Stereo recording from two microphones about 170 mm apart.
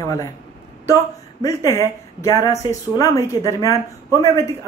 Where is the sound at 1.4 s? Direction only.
15° left (ahead or behind).